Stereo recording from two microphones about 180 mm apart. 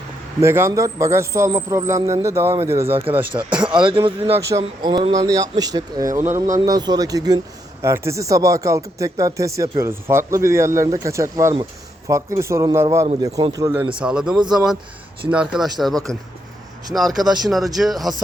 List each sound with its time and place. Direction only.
0.4 s a man's voice: 15° right (ahead or behind)
3.3 s speech: 25° right (ahead or behind)
4.4 s a man's voice: 15° right (ahead or behind)
14.0 s a man's voice: 5° right (ahead or behind)